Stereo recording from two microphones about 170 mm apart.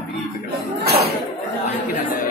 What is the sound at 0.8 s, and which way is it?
Speech, 70° right (ahead or behind).